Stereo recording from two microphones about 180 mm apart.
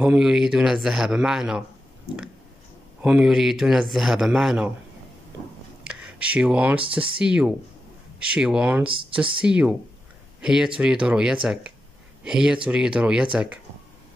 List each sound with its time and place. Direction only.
0.0 s speech: 5° right (ahead or behind)
3.0 s speech: 5° right (ahead or behind)
5.9 s speech: 5° right (ahead or behind)
8.8 s speech: 30° right (ahead or behind)
9.4 s speech: 5° right (ahead or behind)